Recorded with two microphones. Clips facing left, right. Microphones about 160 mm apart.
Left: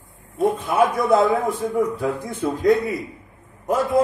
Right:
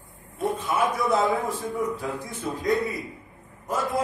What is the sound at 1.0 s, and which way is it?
A man's voice, 55° left (ahead or behind).